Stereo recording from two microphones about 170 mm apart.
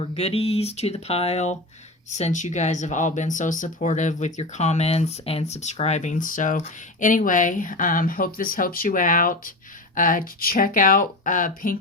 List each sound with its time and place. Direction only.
0.0 s speech: 35° left (ahead or behind); by 11.8 s 55° left (ahead or behind)